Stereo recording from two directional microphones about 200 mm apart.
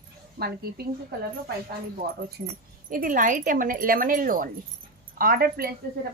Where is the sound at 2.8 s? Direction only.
40° right (ahead or behind).